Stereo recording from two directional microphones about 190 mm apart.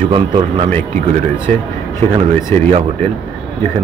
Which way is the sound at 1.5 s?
5° left (ahead or behind).